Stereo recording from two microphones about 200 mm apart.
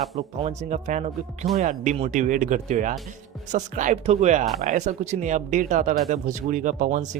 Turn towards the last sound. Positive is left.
turn(degrees=-40)  # may be behind; listen again after turning